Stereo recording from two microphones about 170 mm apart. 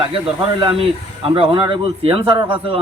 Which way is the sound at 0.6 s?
30° right (ahead or behind).